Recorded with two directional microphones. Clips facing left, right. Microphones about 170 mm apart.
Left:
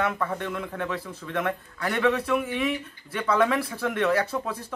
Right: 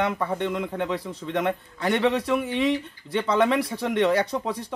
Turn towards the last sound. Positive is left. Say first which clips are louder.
# right 2 dB
turn(degrees=-15)  # may be behind; listen again after turning